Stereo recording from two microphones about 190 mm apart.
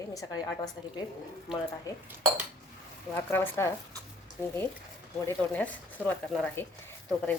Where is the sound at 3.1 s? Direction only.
10° left (ahead or behind).